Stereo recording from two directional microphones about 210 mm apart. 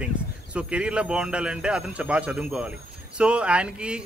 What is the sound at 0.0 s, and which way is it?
A man's voice, 5° right (ahead or behind).